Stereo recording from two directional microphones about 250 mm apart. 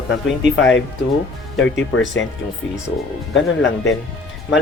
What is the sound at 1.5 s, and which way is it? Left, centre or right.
Speech, left.